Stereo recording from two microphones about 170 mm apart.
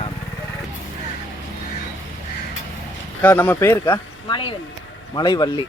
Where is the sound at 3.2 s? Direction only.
10° left (ahead or behind).